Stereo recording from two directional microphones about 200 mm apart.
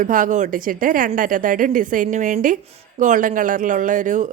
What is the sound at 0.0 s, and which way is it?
A woman's voice, 40° right (ahead or behind).